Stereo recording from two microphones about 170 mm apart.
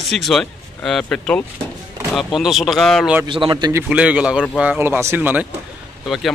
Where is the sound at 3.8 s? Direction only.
5° right (ahead or behind).